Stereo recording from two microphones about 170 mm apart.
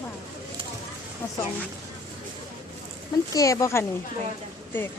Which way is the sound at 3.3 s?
20° left (ahead or behind).